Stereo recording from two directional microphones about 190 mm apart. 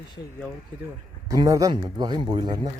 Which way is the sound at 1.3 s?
20° right (ahead or behind).